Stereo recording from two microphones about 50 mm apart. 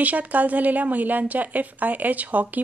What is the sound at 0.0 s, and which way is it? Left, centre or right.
A woman's voice, right.